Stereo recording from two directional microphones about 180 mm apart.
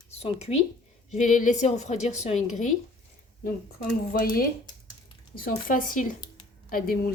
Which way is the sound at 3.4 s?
55° left (ahead or behind).